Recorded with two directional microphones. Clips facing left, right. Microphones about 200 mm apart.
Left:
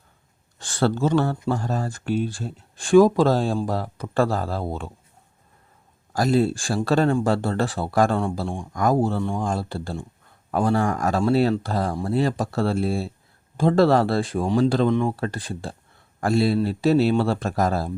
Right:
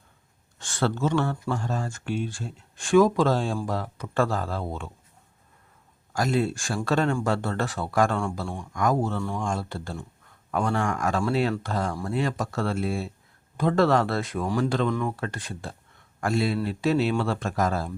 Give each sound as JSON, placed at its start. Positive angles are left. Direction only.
{"t": 0.6, "sound": "speech", "side_deg": 35}
{"t": 6.1, "sound": "speech", "side_deg": 35}